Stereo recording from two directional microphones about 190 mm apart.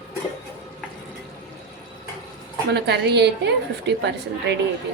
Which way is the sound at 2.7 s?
60° right (ahead or behind).